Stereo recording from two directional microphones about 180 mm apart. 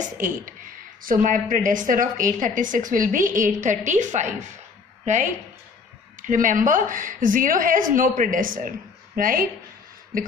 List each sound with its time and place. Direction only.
0.0 s a woman's voice: 45° right (ahead or behind)